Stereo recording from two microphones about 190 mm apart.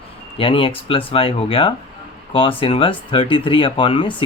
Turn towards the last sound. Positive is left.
turn(degrees=25)  # may be behind; listen again after turning